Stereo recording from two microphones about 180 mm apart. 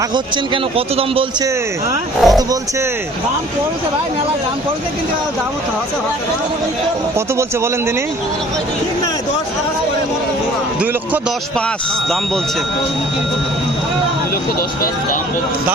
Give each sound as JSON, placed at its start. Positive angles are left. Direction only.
{"t": 0.1, "sound": "a man's voice", "side_deg": -30}
{"t": 2.2, "sound": "speech", "side_deg": 0}